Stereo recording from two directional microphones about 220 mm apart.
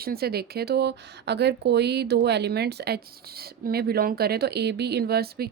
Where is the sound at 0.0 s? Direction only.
45° right (ahead or behind).